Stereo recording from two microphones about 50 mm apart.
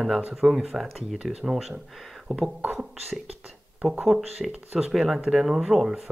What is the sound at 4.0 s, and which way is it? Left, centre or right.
Speech, centre.